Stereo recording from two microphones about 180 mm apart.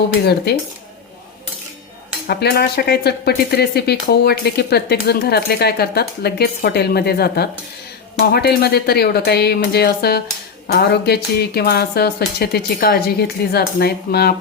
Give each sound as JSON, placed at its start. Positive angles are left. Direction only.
{"t": 0.5, "sound": "speech", "side_deg": 65}
{"t": 2.2, "sound": "speech", "side_deg": 65}